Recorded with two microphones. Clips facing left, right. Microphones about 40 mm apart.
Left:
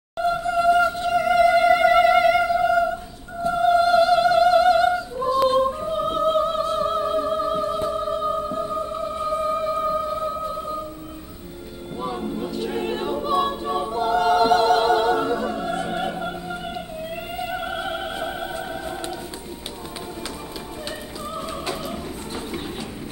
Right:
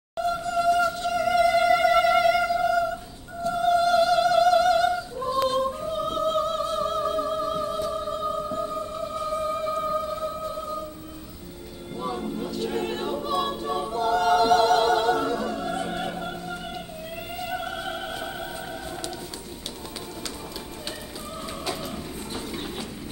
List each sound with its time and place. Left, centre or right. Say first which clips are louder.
0.2 s music: left 4 dB; left
12.0 s choir: left 2 dB; centre
17.4 s music: left 3 dB; centre
21.6 s a sound: left 3 dB; left